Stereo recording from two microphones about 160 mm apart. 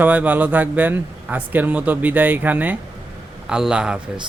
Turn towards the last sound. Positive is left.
turn(degrees=-5)  # may be behind; listen again after turning